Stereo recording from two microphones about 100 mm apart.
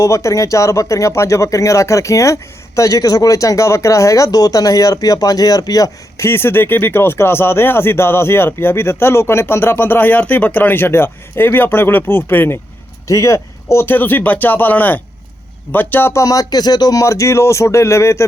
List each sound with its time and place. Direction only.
0.0 s speech: 30° left (ahead or behind)
6.2 s speech: 25° left (ahead or behind)
16.2 s speech: 35° left (ahead or behind)